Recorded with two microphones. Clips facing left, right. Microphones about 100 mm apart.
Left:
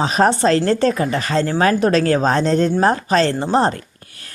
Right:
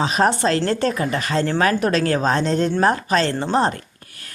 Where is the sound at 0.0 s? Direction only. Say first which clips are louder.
Left 3 dB; 35° left (ahead or behind).